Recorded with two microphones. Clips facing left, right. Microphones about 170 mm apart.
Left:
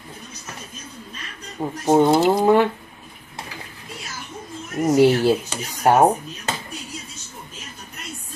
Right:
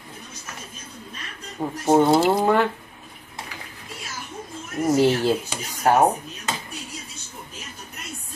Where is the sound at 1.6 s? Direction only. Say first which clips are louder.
Left 1 dB; 5° left (ahead or behind).